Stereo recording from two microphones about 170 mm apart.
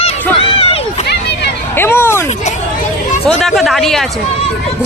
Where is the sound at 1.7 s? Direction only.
15° left (ahead or behind).